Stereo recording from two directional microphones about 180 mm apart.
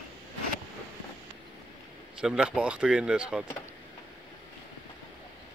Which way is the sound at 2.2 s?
5° right (ahead or behind).